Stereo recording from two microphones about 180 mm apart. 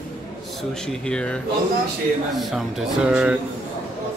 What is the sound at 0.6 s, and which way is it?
Speech, 5° left (ahead or behind).